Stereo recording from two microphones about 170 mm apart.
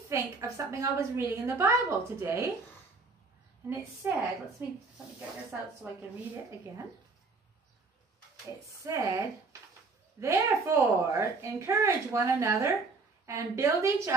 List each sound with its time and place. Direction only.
0.1 s a woman's voice: 15° right (ahead or behind)
4.0 s a woman's voice: 15° right (ahead or behind)
5.8 s a woman's voice: 10° right (ahead or behind)
8.8 s a woman's voice: 20° right (ahead or behind)